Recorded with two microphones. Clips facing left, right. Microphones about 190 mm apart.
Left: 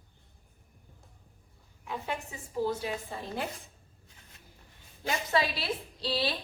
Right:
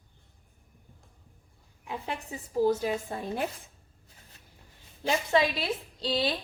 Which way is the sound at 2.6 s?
45° right (ahead or behind).